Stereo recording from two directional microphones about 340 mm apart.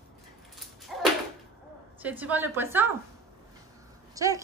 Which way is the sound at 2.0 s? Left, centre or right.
Centre.